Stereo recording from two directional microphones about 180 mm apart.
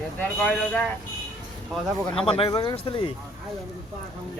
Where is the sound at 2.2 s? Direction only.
30° left (ahead or behind).